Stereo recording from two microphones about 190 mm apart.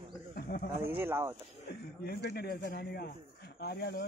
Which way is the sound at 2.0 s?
55° left (ahead or behind).